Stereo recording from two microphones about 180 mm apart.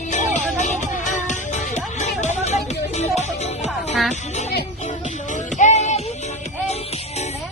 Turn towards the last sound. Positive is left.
turn(degrees=40)  # may be behind; listen again after turning